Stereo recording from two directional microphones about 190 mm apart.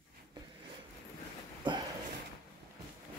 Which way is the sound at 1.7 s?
25° right (ahead or behind).